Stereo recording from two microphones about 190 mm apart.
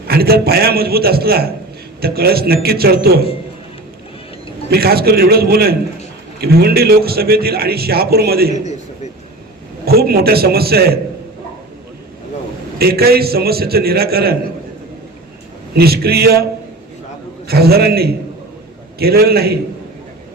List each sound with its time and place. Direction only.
0.1 s a man's voice: 55° right (ahead or behind)
4.7 s a man's voice: 55° right (ahead or behind)
9.8 s a man's voice: 55° right (ahead or behind)
12.8 s a man's voice: 55° right (ahead or behind)
15.7 s a man's voice: 55° right (ahead or behind)
17.5 s a man's voice: 55° right (ahead or behind)